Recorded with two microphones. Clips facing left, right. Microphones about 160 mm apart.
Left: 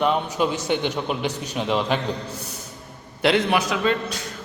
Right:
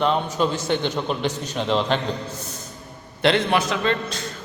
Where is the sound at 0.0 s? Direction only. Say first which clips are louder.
Even; 10° left (ahead or behind).